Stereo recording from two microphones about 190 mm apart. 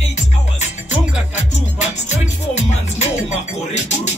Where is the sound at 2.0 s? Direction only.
35° left (ahead or behind).